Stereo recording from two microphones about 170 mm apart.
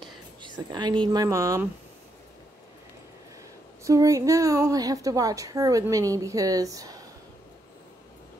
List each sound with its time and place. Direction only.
0.0 s speech: 25° right (ahead or behind)
3.8 s a woman's voice: 20° right (ahead or behind)